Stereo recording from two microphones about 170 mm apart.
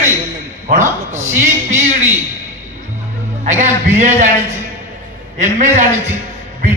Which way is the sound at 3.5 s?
45° right (ahead or behind).